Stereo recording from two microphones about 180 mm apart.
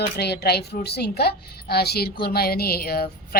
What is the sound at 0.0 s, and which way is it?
A woman's voice, 65° left (ahead or behind).